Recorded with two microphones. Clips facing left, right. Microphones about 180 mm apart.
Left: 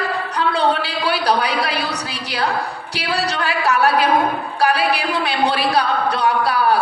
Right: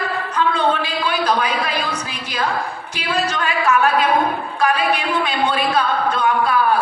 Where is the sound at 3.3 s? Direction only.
35° left (ahead or behind).